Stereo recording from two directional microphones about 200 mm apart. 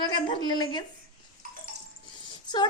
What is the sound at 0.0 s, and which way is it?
Speech, 25° left (ahead or behind).